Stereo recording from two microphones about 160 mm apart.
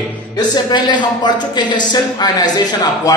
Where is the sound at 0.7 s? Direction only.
25° left (ahead or behind).